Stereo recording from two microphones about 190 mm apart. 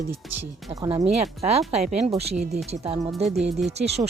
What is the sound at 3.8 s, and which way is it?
Speech, 35° right (ahead or behind).